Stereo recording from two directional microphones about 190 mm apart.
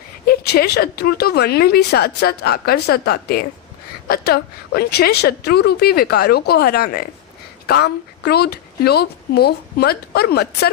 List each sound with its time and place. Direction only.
0.3 s speech: 55° left (ahead or behind)